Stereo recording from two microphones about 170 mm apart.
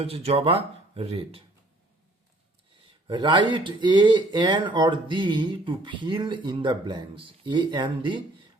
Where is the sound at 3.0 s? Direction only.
25° right (ahead or behind).